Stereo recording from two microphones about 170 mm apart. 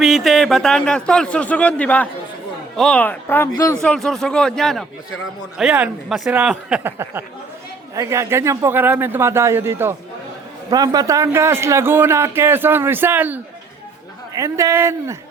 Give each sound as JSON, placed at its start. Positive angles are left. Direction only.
{"t": 0.0, "sound": "a man's voice", "side_deg": 0}
{"t": 3.8, "sound": "a man's voice", "side_deg": 5}